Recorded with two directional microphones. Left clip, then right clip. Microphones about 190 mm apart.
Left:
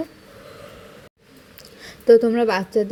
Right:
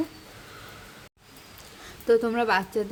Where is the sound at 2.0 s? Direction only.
20° left (ahead or behind).